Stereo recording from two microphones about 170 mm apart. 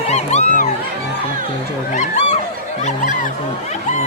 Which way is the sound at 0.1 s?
40° left (ahead or behind).